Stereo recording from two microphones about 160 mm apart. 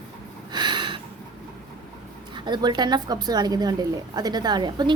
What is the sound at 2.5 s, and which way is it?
A child's voice, 25° right (ahead or behind).